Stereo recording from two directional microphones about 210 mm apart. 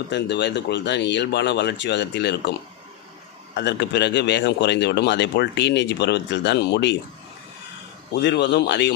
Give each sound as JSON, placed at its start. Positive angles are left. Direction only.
{"t": 0.1, "sound": "speech", "side_deg": 55}
{"t": 3.5, "sound": "speech", "side_deg": 55}
{"t": 8.1, "sound": "speech", "side_deg": 55}